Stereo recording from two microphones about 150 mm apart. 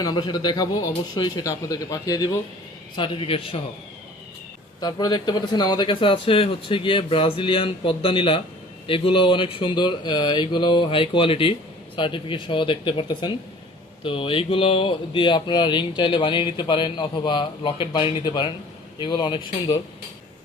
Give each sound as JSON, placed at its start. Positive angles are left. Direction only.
{"t": 0.0, "sound": "speech", "side_deg": 30}
{"t": 2.9, "sound": "speech", "side_deg": 35}
{"t": 4.8, "sound": "speech", "side_deg": 25}